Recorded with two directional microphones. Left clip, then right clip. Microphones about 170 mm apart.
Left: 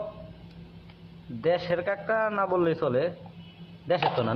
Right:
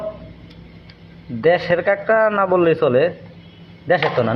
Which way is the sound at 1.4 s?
15° right (ahead or behind).